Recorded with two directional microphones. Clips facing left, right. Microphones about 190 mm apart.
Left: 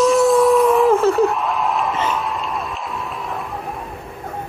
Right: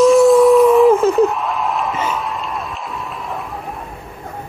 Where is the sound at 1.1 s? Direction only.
Centre (ahead or behind).